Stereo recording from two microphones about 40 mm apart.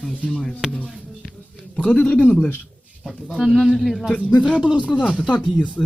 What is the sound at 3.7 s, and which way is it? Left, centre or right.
Speech, centre.